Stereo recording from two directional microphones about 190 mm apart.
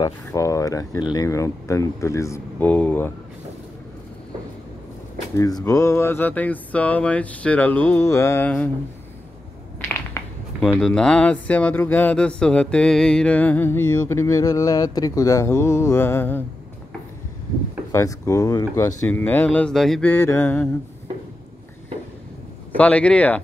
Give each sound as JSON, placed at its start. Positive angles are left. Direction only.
{"t": 0.0, "sound": "speech", "side_deg": 15}
{"t": 5.4, "sound": "speech", "side_deg": 20}
{"t": 9.8, "sound": "speech", "side_deg": 10}
{"t": 17.9, "sound": "speech", "side_deg": 15}
{"t": 22.8, "sound": "speech", "side_deg": 5}